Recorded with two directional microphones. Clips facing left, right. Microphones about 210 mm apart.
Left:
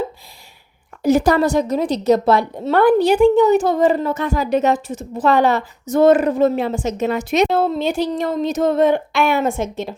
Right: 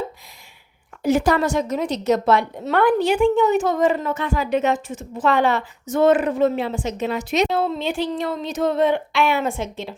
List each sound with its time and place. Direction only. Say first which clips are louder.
1.0 s a woman's voice: left 4 dB; 40° left (ahead or behind)